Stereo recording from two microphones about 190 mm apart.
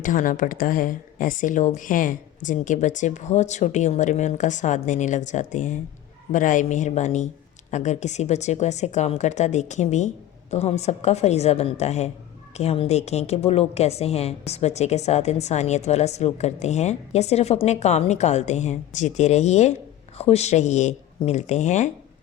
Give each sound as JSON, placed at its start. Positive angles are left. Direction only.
{"t": 0.0, "sound": "a woman's voice", "side_deg": 45}